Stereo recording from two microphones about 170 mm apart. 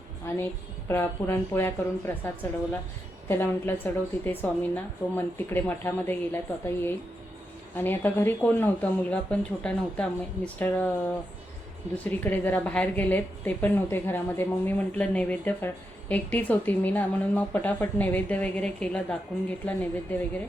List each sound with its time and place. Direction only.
0.3 s a woman's voice: 15° left (ahead or behind)
12.0 s a woman's voice: 10° left (ahead or behind)